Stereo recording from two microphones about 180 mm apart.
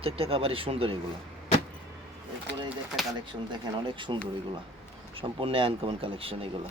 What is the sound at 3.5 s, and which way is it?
Speech, 25° right (ahead or behind).